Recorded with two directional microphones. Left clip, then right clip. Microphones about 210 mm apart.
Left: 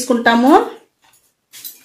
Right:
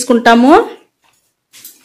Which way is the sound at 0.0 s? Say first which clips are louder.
Right 5 dB; 45° right (ahead or behind).